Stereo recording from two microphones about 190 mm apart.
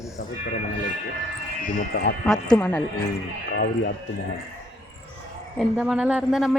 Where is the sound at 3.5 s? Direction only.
60° left (ahead or behind).